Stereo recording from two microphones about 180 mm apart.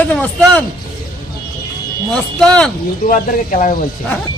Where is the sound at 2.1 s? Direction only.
5° left (ahead or behind).